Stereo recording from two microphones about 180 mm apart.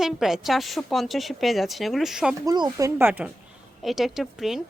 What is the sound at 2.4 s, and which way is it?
Speech, 20° right (ahead or behind).